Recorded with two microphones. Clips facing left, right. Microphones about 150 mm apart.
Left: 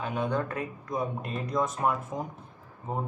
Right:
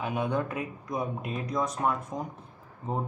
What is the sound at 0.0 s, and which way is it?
Speech, 10° right (ahead or behind).